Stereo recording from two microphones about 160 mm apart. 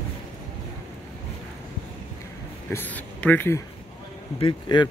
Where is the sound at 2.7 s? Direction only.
10° left (ahead or behind).